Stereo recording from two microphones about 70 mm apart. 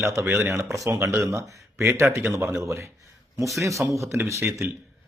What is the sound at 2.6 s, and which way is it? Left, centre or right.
Speech, right.